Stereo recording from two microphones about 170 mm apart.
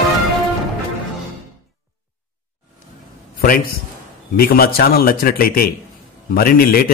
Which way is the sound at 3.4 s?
60° left (ahead or behind).